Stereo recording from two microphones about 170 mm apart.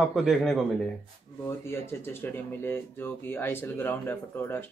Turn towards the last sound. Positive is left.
turn(degrees=10)  # may be behind; listen again after turning